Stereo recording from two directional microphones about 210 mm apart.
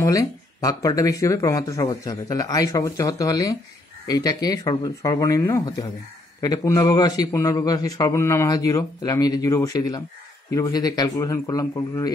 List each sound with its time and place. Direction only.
0.0 s speech: 15° left (ahead or behind)